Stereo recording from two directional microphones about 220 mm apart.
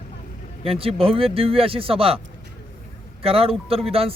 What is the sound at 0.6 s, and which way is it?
A man's voice, 25° right (ahead or behind).